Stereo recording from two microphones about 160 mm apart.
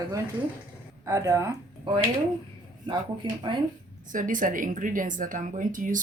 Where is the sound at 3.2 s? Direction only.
30° right (ahead or behind).